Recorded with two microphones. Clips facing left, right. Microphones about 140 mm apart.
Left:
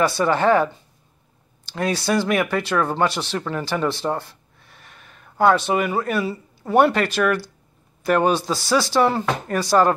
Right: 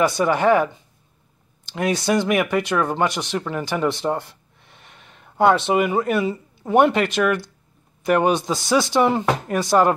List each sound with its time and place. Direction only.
0.0 s speech: 15° right (ahead or behind)
1.7 s speech: 20° right (ahead or behind)